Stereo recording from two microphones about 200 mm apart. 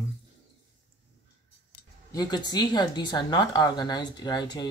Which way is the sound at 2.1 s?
20° left (ahead or behind).